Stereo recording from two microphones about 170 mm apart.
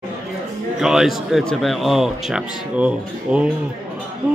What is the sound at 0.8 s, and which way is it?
Speech, centre (ahead or behind).